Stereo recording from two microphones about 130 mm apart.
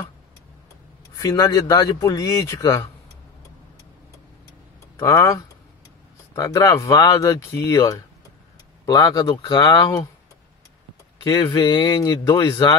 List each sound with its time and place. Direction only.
1.1 s speech: 30° left (ahead or behind)
4.9 s speech: 20° left (ahead or behind)
11.2 s speech: 30° left (ahead or behind)